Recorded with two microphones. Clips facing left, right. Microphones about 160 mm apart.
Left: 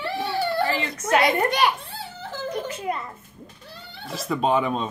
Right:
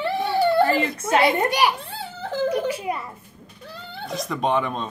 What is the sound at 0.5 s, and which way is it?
Baby cry, 55° right (ahead or behind).